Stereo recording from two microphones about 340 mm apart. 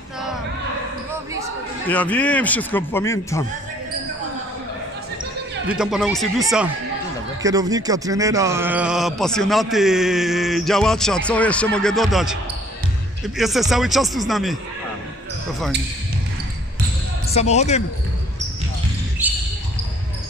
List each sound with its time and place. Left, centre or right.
1.9 s speech: centre
5.7 s speech: centre
17.3 s speech: centre
19.2 s basketball bounce: centre